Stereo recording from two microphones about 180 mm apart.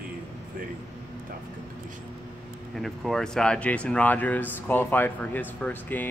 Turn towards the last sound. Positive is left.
turn(degrees=10)  # may be behind; listen again after turning